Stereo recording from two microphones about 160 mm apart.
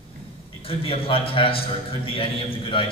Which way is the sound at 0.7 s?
35° left (ahead or behind).